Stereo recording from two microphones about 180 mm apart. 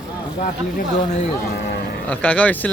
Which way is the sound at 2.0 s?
5° left (ahead or behind).